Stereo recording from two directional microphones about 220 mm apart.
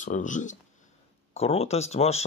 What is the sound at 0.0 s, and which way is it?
Speech, 35° left (ahead or behind).